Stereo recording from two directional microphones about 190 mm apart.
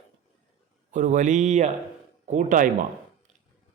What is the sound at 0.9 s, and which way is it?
Speech, 40° right (ahead or behind).